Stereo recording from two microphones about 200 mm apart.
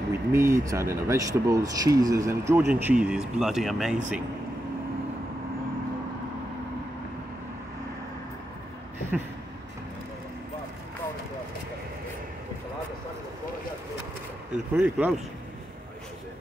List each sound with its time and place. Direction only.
0.3 s speech: 15° right (ahead or behind)
14.5 s speech: 5° right (ahead or behind)